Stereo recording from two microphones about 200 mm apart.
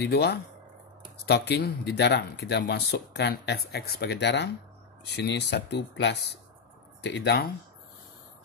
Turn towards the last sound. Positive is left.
turn(degrees=60)  # may be behind; listen again after turning